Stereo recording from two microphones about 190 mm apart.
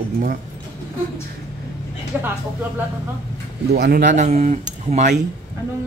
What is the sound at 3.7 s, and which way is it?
Speech, 50° right (ahead or behind).